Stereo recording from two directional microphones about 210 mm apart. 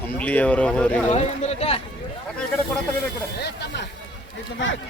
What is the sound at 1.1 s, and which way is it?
Speech, 30° left (ahead or behind).